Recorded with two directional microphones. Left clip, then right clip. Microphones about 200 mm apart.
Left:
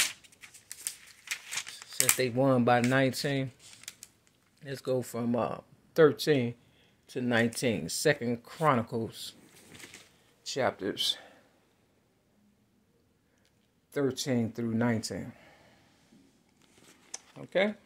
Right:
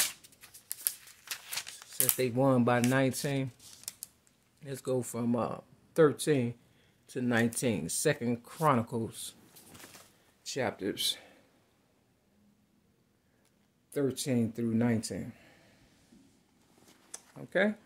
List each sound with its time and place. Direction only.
1.2 s a sound: 10° left (ahead or behind)
2.1 s speech: 15° right (ahead or behind)
4.6 s speech: 15° right (ahead or behind)
10.4 s speech: 15° right (ahead or behind)
13.9 s speech: 15° right (ahead or behind)
17.1 s a sound: 10° right (ahead or behind)